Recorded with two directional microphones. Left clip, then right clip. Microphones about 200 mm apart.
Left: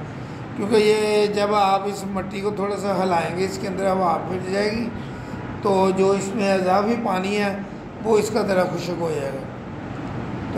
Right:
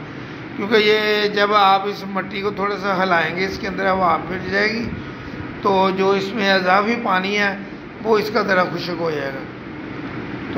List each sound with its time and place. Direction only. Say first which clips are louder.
0.6 s a man's voice: right 2 dB; 5° right (ahead or behind)
6.6 s speech: right 2 dB; 25° right (ahead or behind)
7.1 s a man's voice: right 4 dB; 5° right (ahead or behind)